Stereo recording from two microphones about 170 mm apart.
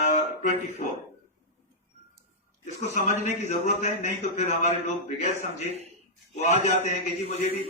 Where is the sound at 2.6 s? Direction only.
45° left (ahead or behind).